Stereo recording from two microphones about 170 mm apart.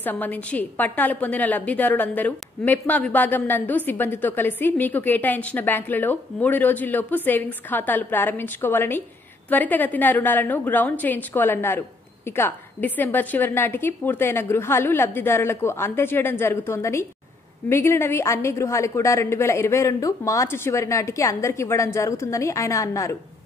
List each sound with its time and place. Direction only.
0.0 s a woman's voice: 10° left (ahead or behind)